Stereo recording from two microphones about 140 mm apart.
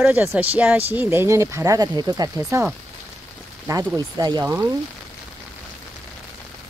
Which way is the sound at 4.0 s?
30° right (ahead or behind).